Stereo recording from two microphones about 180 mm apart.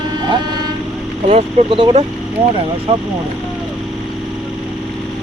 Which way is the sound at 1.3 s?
30° right (ahead or behind).